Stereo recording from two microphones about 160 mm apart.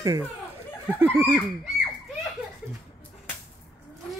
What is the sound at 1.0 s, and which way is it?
Speech, 15° right (ahead or behind).